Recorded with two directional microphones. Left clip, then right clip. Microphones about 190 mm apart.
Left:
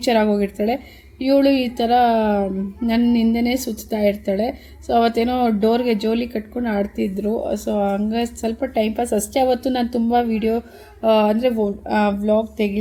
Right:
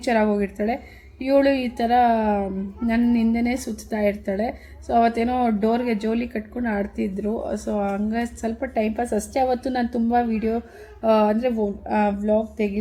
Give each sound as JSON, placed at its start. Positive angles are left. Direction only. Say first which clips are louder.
{"t": 0.0, "sound": "a woman's voice", "louder": "left 3 dB", "side_deg": 15}